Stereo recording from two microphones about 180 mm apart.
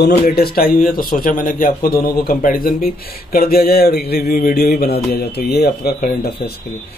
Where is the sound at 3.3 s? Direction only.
55° left (ahead or behind).